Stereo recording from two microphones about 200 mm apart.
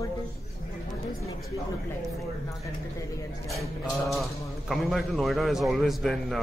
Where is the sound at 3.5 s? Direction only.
Centre (ahead or behind).